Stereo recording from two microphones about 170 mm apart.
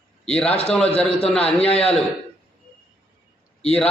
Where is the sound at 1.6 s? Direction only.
35° left (ahead or behind).